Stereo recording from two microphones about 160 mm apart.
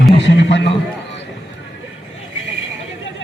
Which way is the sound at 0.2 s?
90° left.